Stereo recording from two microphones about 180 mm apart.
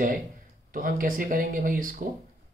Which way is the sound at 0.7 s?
50° right (ahead or behind).